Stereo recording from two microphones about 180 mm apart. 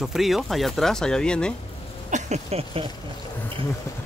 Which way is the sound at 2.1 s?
35° right (ahead or behind).